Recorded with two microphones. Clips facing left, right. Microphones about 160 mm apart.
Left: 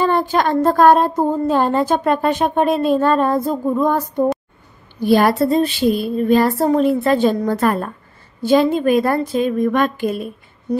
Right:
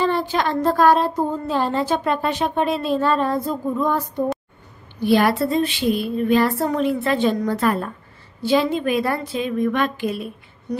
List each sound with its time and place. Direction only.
0.0 s speech: 50° left (ahead or behind)
5.0 s speech: 40° left (ahead or behind)